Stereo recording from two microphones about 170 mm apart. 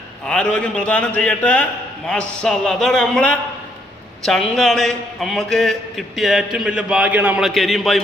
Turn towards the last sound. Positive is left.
turn(degrees=0)  # may be behind; listen again after turning